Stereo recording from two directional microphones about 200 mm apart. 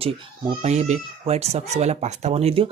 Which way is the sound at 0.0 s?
30° right (ahead or behind).